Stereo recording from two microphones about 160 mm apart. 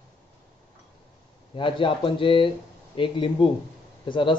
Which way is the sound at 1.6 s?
30° left (ahead or behind).